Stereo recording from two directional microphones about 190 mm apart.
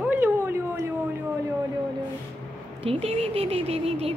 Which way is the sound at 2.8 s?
30° right (ahead or behind).